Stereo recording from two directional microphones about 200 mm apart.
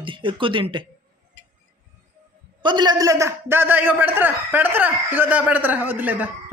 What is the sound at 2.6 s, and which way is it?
A man's voice, 20° right (ahead or behind).